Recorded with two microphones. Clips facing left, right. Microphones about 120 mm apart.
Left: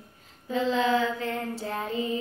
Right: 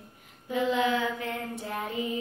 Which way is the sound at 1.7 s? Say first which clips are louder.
Left 1 dB; 25° left (ahead or behind).